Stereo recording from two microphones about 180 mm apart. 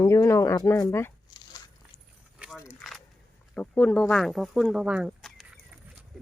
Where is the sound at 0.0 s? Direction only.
15° left (ahead or behind).